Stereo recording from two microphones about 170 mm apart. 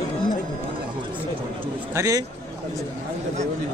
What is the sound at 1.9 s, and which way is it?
Speech, 20° right (ahead or behind).